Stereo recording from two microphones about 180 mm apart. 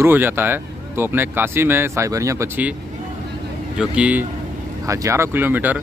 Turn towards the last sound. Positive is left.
turn(degrees=-10)  # may be behind; listen again after turning